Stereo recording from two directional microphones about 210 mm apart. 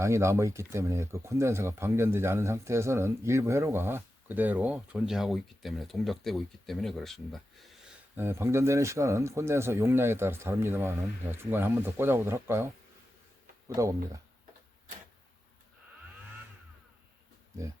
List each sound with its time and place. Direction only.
0.0 s speech: 15° right (ahead or behind)
8.1 s speech: 10° right (ahead or behind)
13.7 s speech: 15° right (ahead or behind)